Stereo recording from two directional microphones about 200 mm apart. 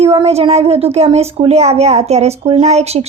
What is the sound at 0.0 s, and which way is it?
Speech, 30° right (ahead or behind).